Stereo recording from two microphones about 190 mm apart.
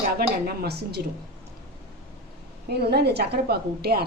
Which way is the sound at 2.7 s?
60° right (ahead or behind).